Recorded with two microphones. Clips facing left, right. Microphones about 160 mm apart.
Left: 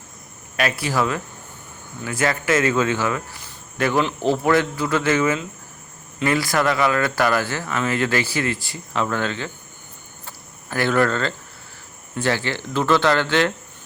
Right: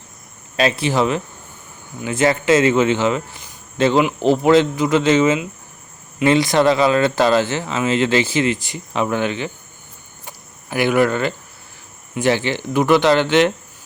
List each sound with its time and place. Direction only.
0.5 s speech: 25° right (ahead or behind)
10.2 s a sound: 15° right (ahead or behind)
12.1 s speech: 20° right (ahead or behind)